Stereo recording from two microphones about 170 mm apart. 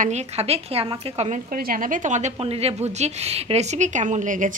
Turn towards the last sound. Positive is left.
turn(degrees=-50)  # may be behind; listen again after turning